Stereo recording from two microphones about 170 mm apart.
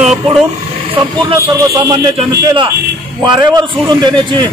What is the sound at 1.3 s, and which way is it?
Speech, 20° right (ahead or behind).